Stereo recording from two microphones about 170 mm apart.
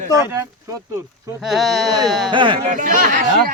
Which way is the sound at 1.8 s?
20° right (ahead or behind).